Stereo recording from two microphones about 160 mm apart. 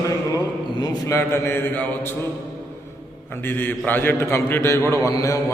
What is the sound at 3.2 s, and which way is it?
A man's voice, 10° left (ahead or behind).